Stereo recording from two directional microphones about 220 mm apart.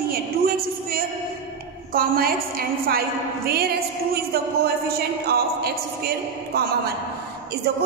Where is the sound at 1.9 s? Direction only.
40° right (ahead or behind).